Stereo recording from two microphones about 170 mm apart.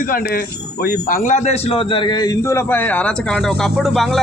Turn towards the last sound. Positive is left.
turn(degrees=0)  # may be behind; listen again after turning